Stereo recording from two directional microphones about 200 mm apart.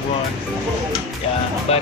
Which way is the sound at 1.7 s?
30° left (ahead or behind).